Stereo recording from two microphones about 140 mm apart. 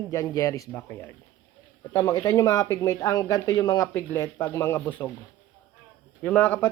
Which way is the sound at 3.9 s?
15° left (ahead or behind).